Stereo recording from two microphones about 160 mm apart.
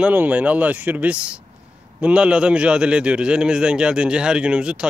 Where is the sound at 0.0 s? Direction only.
10° right (ahead or behind).